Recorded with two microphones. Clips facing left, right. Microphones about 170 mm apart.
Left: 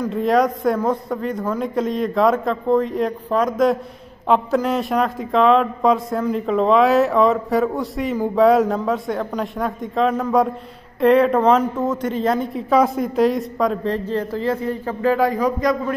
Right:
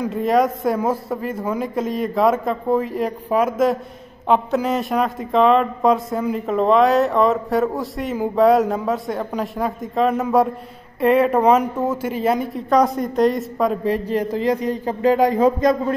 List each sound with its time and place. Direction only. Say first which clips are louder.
0.0 s a man's voice: even; centre (ahead or behind)
12.6 s a man's voice: even; centre (ahead or behind)
13.9 s a man's voice: right 2 dB; 15° right (ahead or behind)